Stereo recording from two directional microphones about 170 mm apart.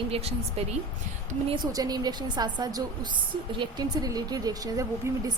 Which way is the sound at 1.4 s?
25° right (ahead or behind).